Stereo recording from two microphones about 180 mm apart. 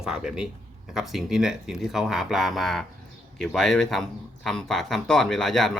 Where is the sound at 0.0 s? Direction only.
5° right (ahead or behind).